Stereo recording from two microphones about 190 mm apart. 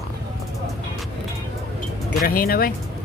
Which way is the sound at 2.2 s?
50° left (ahead or behind).